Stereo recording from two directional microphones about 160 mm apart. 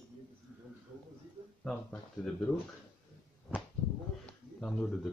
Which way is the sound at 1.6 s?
5° left (ahead or behind).